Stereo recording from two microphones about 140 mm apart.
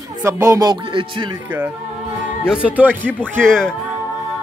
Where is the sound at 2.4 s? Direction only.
5° right (ahead or behind).